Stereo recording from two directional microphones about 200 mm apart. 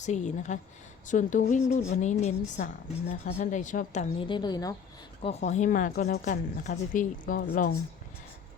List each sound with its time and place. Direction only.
0.0 s speech: 35° left (ahead or behind)
4.3 s a woman's voice: 20° left (ahead or behind)
5.2 s speech: 35° left (ahead or behind)